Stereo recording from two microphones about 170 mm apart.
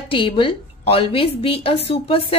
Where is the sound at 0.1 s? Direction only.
30° left (ahead or behind).